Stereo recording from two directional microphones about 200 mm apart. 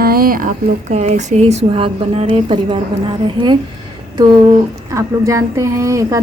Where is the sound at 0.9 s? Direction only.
35° right (ahead or behind).